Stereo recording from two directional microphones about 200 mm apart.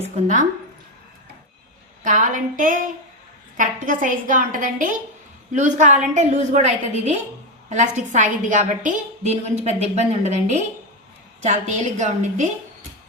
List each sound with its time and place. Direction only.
0.0 s a woman's voice: 40° right (ahead or behind)
2.0 s a woman's voice: 40° right (ahead or behind)